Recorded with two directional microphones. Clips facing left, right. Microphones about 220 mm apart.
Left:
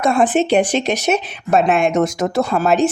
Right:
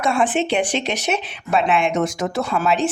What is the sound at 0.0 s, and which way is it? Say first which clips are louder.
Speech: left 4 dB; 40° left (ahead or behind).